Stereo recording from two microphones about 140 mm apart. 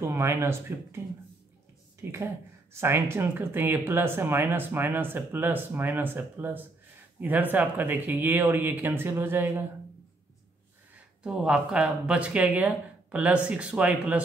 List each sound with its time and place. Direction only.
0.0 s speech: 20° right (ahead or behind)
2.0 s a sound: 20° right (ahead or behind)
2.7 s speech: 20° right (ahead or behind)
11.2 s speech: 5° right (ahead or behind)